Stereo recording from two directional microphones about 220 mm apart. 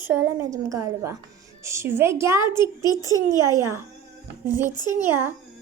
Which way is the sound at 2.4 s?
20° left (ahead or behind).